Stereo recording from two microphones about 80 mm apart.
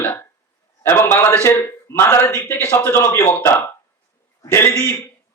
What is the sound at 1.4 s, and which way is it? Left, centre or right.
A man's voice, left.